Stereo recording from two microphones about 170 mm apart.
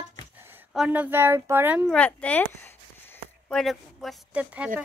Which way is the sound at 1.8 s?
5° left (ahead or behind).